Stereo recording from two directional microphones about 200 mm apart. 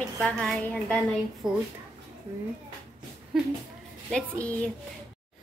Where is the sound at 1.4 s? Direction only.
20° right (ahead or behind).